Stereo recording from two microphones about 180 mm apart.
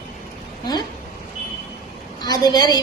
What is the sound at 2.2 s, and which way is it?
Speech, 20° left (ahead or behind).